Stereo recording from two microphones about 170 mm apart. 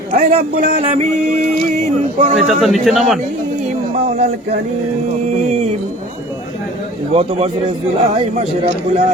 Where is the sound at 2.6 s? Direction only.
Centre (ahead or behind).